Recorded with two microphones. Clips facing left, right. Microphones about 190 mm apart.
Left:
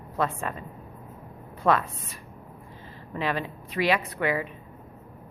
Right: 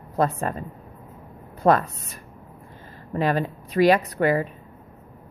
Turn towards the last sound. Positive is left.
turn(degrees=-40)  # may be behind; listen again after turning